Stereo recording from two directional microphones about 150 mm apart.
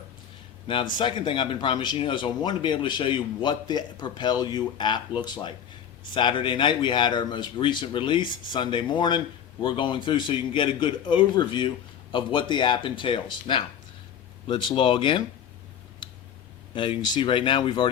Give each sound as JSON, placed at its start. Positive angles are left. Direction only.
{"t": 0.7, "sound": "speech", "side_deg": 35}
{"t": 16.0, "sound": "tick", "side_deg": 35}
{"t": 16.7, "sound": "speech", "side_deg": 35}